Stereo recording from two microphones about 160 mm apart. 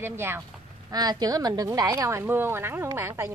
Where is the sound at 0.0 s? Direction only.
15° right (ahead or behind).